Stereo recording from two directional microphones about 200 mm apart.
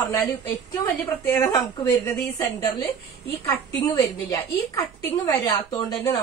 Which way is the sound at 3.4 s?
15° left (ahead or behind).